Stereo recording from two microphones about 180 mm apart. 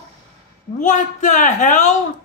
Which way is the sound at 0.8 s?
45° left (ahead or behind).